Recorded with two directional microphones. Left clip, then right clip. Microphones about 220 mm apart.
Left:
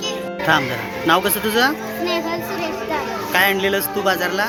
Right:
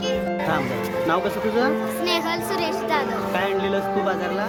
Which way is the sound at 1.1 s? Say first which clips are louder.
Left 7 dB; 5° left (ahead or behind).